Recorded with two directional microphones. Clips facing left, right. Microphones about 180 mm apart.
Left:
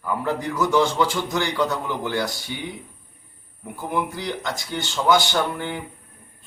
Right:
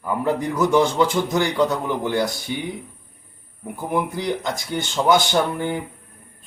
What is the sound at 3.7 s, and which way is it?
A man's voice, 20° right (ahead or behind).